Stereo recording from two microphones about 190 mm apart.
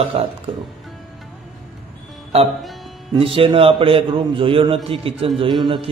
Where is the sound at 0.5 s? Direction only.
25° right (ahead or behind).